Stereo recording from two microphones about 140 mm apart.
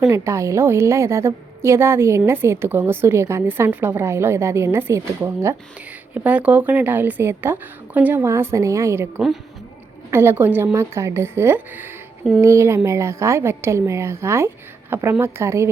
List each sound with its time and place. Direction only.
0.1 s a woman's voice: 20° right (ahead or behind)